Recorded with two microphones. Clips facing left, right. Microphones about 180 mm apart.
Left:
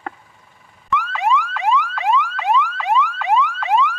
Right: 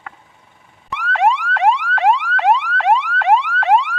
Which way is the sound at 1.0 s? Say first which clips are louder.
Right 5 dB; 75° right (ahead or behind).